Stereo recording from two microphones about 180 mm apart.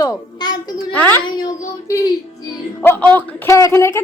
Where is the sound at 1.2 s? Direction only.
25° left (ahead or behind).